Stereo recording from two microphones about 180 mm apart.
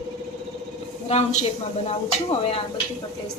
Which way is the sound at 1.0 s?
35° left (ahead or behind).